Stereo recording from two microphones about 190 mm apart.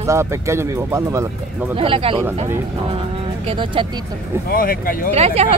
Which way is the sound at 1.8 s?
30° right (ahead or behind).